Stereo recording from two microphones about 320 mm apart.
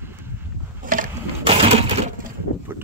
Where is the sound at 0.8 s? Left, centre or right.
Right.